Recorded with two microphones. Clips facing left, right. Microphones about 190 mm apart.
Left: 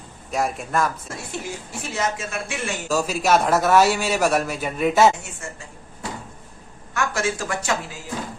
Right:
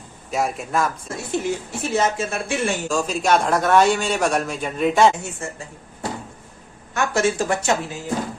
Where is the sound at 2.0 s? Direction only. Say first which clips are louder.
Right 5 dB; 30° right (ahead or behind).